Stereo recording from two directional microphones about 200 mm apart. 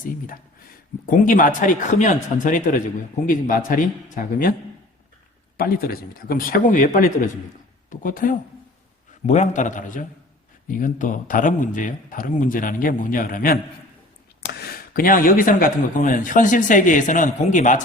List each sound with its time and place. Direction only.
0.0 s speech: 45° left (ahead or behind)
5.5 s a man's voice: 50° left (ahead or behind)